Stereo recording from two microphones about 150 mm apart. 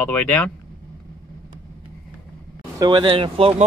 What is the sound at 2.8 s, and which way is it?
Speech, 30° right (ahead or behind).